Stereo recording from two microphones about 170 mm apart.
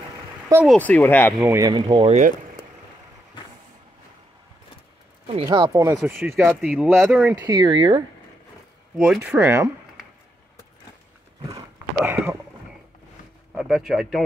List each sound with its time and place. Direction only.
0.7 s speech: 10° left (ahead or behind)
1.4 s speech: 20° right (ahead or behind)
5.5 s speech: 20° right (ahead or behind); by 7.4 s 5° right (ahead or behind)
7.4 s speech: 25° right (ahead or behind)
8.9 s speech: centre (ahead or behind)
9.2 s speech: 15° right (ahead or behind)
12.0 s speech: 10° right (ahead or behind)
13.6 s speech: 5° right (ahead or behind)